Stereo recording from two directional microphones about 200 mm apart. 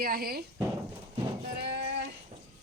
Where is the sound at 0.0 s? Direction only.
50° right (ahead or behind).